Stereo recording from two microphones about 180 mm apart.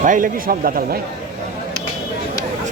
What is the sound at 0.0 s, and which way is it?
Speech, 50° right (ahead or behind).